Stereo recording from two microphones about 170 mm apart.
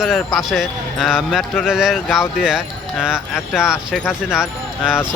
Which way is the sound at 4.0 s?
10° left (ahead or behind).